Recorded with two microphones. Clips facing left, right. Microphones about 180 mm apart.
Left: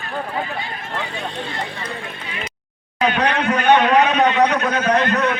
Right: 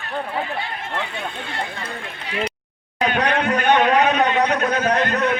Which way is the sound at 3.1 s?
45° right (ahead or behind).